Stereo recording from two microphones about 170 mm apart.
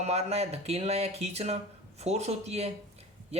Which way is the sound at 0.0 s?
40° right (ahead or behind).